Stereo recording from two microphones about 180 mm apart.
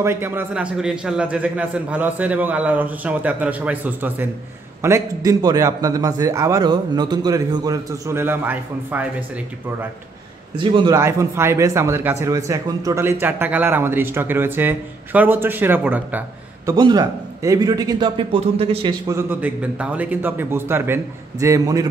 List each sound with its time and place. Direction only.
0.0 s a man's voice: 15° right (ahead or behind)
10.6 s a man's voice: 25° right (ahead or behind)
11.0 s speech: 15° right (ahead or behind)
16.7 s a man's voice: 20° right (ahead or behind)
19.0 s speech: 15° right (ahead or behind)